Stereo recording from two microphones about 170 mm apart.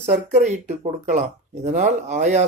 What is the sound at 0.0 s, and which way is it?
Speech, 45° right (ahead or behind).